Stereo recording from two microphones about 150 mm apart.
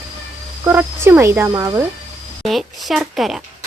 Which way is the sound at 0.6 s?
15° right (ahead or behind).